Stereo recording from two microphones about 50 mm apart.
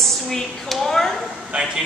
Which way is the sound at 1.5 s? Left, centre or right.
Right.